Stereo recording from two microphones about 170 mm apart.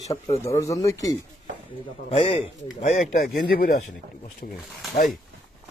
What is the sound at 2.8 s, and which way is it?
Speech, 40° left (ahead or behind).